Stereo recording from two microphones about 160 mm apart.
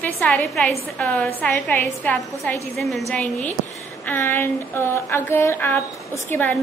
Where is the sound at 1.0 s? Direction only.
10° left (ahead or behind).